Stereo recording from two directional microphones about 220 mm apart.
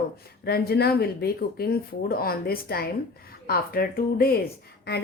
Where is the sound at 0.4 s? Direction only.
45° left (ahead or behind).